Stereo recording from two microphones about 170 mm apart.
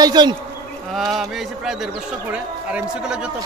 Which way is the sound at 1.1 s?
Centre (ahead or behind).